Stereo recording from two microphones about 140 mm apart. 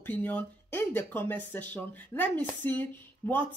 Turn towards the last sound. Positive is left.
turn(degrees=15)  # may be behind; listen again after turning